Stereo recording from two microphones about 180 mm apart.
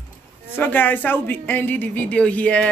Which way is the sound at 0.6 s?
10° left (ahead or behind).